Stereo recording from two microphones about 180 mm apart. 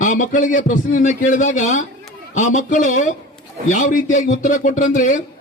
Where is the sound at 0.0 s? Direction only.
45° left (ahead or behind).